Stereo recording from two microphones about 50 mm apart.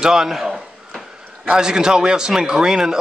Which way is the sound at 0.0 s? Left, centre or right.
Centre.